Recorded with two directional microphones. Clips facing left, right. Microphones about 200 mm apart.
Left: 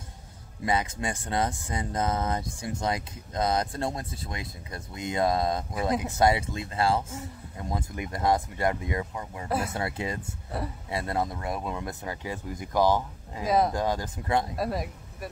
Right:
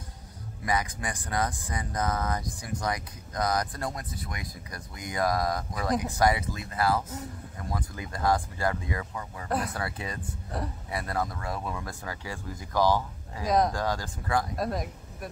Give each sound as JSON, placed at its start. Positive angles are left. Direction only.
{"t": 0.7, "sound": "speech", "side_deg": 25}
{"t": 9.5, "sound": "speech", "side_deg": 5}
{"t": 9.8, "sound": "speech", "side_deg": 25}
{"t": 10.5, "sound": "speech", "side_deg": 5}
{"t": 10.9, "sound": "speech", "side_deg": 25}
{"t": 13.5, "sound": "speech", "side_deg": 5}
{"t": 13.7, "sound": "speech", "side_deg": 20}
{"t": 14.5, "sound": "speech", "side_deg": 5}